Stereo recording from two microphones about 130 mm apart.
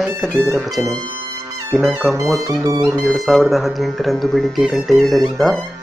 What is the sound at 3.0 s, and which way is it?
Speech, centre (ahead or behind).